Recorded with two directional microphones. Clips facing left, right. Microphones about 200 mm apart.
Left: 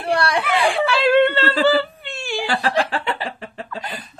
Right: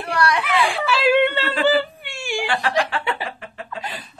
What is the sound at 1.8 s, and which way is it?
Wail, 15° right (ahead or behind).